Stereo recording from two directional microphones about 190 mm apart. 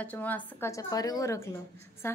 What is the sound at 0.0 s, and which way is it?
A woman's voice, 10° left (ahead or behind).